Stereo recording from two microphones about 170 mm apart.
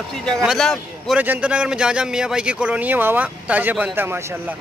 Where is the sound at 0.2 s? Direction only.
Centre (ahead or behind); by 4.6 s 15° right (ahead or behind).